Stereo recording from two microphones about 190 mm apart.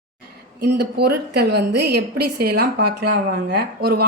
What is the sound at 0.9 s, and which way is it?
A woman's voice, 60° right (ahead or behind).